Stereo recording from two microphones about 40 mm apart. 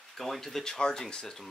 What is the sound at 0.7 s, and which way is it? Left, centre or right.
Speech, centre.